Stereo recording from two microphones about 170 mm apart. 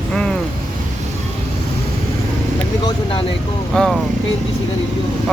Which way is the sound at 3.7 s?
5° left (ahead or behind).